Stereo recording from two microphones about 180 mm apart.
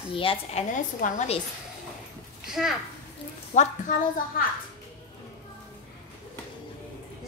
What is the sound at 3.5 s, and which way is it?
Speech, 40° left (ahead or behind).